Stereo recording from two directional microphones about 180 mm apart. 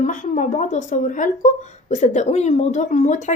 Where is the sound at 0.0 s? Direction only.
45° left (ahead or behind).